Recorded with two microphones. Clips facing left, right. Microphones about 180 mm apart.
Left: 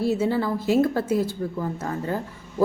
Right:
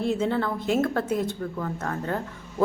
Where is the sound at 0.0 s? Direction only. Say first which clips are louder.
Left 2 dB; 5° left (ahead or behind).